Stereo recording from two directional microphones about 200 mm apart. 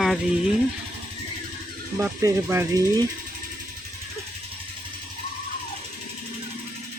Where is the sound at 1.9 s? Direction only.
15° right (ahead or behind).